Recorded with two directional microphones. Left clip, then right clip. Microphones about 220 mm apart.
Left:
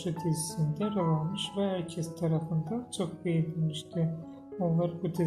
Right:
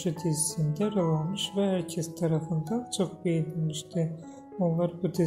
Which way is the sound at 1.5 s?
25° right (ahead or behind).